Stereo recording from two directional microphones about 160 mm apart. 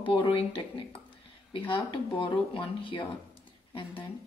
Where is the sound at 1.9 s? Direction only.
30° left (ahead or behind).